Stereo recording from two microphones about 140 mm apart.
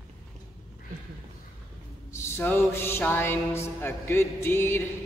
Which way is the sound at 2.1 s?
20° left (ahead or behind).